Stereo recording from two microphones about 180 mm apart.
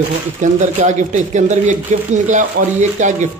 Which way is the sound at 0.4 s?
45° right (ahead or behind).